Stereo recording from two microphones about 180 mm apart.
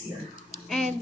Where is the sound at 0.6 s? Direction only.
5° left (ahead or behind).